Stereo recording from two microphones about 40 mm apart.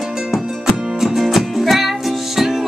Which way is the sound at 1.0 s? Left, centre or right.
Centre.